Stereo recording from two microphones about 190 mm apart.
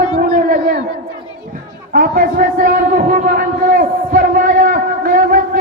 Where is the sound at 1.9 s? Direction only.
50° right (ahead or behind).